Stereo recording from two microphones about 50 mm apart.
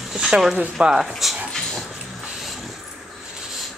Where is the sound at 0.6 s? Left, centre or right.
Centre.